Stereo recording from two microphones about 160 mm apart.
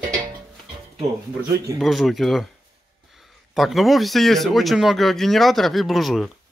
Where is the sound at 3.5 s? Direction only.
Centre (ahead or behind).